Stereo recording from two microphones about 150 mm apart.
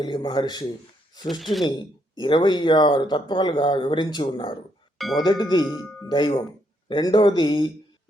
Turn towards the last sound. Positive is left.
turn(degrees=30)  # may be behind; listen again after turning